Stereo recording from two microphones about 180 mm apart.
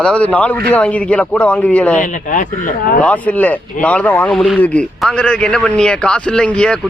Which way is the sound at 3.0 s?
10° left (ahead or behind).